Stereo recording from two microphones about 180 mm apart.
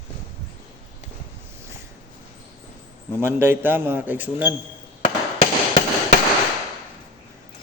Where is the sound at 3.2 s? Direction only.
10° right (ahead or behind).